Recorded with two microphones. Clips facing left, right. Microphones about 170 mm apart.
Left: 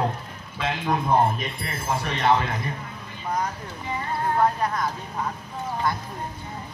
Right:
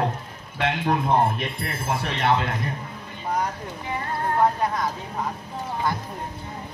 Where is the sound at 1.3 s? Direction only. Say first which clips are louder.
Right 2 dB; 65° right (ahead or behind).